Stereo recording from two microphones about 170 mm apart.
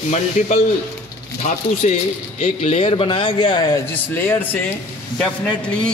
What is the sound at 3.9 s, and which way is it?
A man's voice, 10° left (ahead or behind).